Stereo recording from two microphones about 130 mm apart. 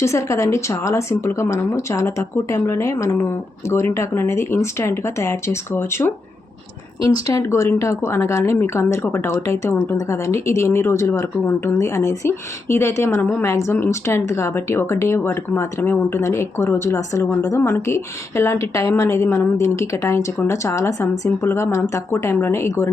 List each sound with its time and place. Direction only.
0.0 s speech: 20° left (ahead or behind)